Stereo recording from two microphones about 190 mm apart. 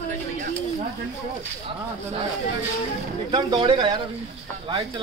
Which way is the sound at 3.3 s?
25° right (ahead or behind).